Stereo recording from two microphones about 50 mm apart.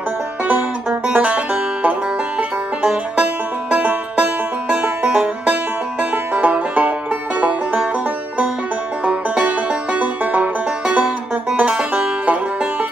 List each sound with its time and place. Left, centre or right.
1.0 s music: right
2.8 s music: centre
6.3 s music: right
9.0 s music: right
11.7 s music: centre